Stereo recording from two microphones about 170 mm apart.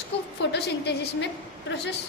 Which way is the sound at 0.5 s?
75° left (ahead or behind).